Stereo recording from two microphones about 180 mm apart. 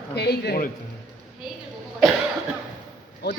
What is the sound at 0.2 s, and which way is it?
Speech, 65° left (ahead or behind).